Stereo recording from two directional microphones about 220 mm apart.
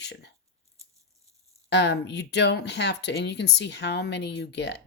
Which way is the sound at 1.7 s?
50° left (ahead or behind).